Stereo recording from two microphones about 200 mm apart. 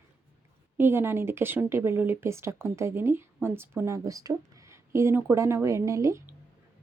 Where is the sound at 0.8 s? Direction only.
10° right (ahead or behind).